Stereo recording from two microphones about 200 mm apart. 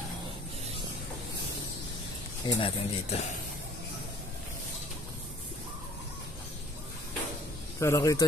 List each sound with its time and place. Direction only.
2.4 s speech: 30° left (ahead or behind)
7.8 s speech: 15° left (ahead or behind)